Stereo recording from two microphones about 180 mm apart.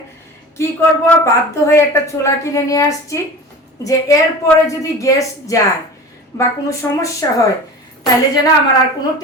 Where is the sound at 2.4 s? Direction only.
20° left (ahead or behind).